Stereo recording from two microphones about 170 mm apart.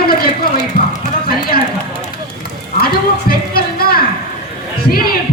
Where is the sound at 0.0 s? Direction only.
60° left (ahead or behind).